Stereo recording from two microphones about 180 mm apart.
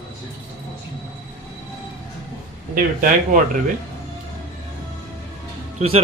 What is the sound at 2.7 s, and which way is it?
Speech, 50° right (ahead or behind).